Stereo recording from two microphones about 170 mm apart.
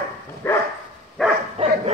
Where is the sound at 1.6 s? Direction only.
35° right (ahead or behind).